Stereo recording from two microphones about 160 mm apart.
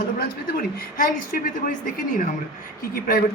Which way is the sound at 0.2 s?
60° left (ahead or behind).